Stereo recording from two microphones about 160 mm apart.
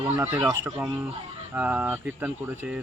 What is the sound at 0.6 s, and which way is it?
Speech, 5° right (ahead or behind).